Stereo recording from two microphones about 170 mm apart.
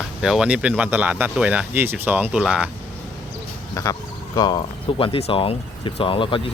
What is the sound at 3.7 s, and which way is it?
Speech, 20° left (ahead or behind).